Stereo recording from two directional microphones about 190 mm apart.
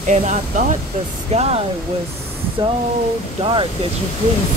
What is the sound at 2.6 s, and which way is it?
Speech, 25° right (ahead or behind).